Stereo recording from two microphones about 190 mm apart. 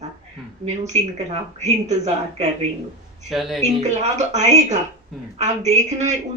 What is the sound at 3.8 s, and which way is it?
Speech, 35° right (ahead or behind).